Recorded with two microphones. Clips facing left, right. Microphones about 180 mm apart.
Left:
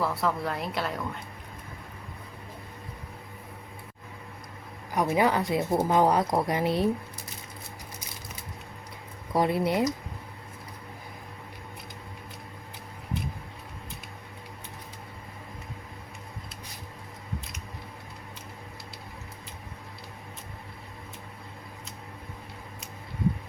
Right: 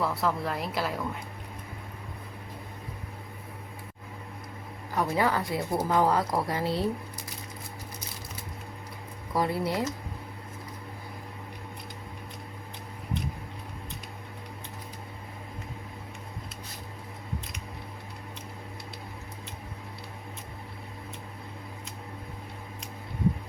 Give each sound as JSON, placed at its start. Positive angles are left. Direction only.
{"t": 0.0, "sound": "a woman's voice", "side_deg": 0}
{"t": 4.9, "sound": "a woman's voice", "side_deg": 20}
{"t": 9.3, "sound": "a woman's voice", "side_deg": 20}